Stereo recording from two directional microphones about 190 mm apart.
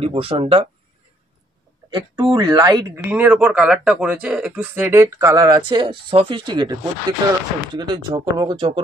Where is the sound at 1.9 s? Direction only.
20° right (ahead or behind).